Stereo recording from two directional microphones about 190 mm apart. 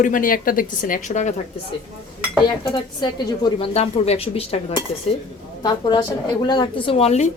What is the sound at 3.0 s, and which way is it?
A woman's voice, 25° left (ahead or behind).